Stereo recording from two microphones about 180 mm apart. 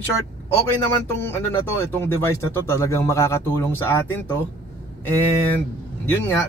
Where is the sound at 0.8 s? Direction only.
15° left (ahead or behind).